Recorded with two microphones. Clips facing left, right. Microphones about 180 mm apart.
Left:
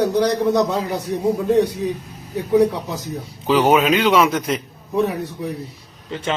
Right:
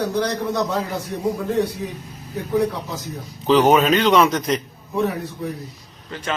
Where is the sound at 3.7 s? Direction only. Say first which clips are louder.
Even; 10° left (ahead or behind).